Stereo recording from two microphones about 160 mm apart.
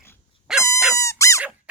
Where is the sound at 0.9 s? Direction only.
20° left (ahead or behind).